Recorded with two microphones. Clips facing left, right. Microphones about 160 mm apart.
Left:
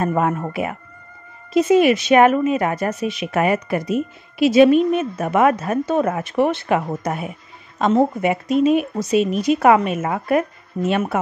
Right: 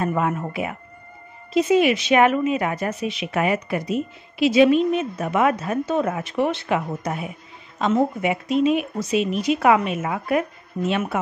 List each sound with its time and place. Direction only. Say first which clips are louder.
0.0 s a woman's voice: left 3 dB; 40° left (ahead or behind)